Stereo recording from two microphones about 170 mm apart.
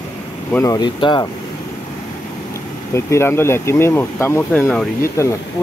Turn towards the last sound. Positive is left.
turn(degrees=10)  # may be behind; listen again after turning